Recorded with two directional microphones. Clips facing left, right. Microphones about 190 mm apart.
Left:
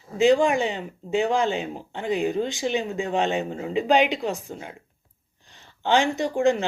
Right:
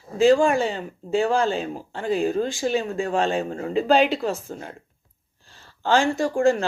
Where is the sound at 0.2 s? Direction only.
20° left (ahead or behind).